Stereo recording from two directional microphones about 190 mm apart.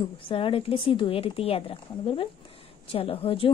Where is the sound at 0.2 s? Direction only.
30° left (ahead or behind).